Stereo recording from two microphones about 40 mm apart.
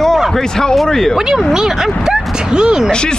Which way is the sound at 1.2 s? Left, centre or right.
Centre.